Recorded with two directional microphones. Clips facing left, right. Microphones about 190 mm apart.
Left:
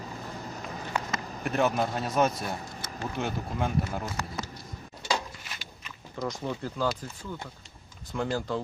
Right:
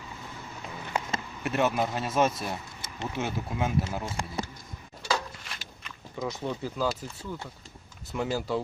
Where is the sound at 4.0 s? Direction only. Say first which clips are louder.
Right 1 dB; 30° right (ahead or behind).